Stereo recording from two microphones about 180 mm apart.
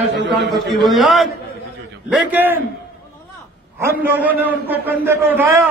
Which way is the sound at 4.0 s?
10° right (ahead or behind).